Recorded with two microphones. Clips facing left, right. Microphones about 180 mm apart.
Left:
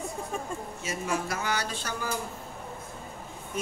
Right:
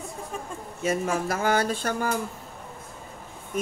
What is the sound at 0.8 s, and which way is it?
A woman's voice, 55° right (ahead or behind).